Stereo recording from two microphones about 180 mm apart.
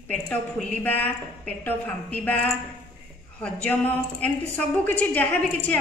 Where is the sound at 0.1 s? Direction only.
10° left (ahead or behind).